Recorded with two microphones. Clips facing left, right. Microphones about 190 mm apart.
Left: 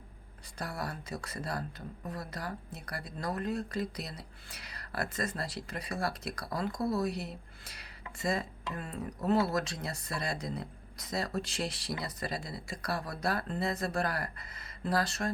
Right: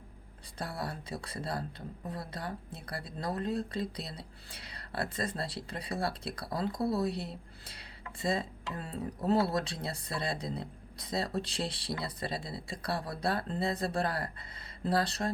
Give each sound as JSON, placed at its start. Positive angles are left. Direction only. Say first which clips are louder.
{"t": 0.6, "sound": "speech", "louder": "even", "side_deg": -30}